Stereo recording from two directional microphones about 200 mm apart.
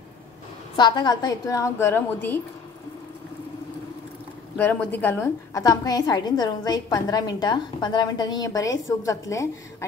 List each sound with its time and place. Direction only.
0.7 s a woman's voice: 20° left (ahead or behind)
4.6 s a woman's voice: 10° left (ahead or behind)